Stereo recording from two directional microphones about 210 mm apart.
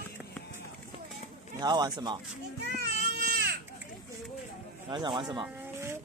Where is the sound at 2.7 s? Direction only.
50° right (ahead or behind).